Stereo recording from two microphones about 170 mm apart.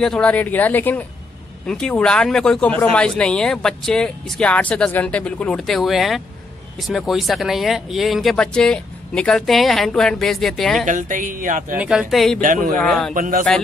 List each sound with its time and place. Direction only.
0.0 s speech: 5° left (ahead or behind)
10.9 s a woman's voice: 50° right (ahead or behind)
11.7 s speech: 5° right (ahead or behind)
12.4 s a woman's voice: 50° right (ahead or behind)
12.7 s speech: 5° left (ahead or behind)
13.1 s speech: 55° right (ahead or behind)